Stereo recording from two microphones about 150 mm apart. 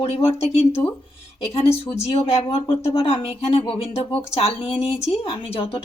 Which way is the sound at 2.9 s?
40° left (ahead or behind).